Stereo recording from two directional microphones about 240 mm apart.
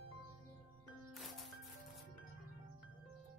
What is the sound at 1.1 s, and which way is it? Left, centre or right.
Music, centre.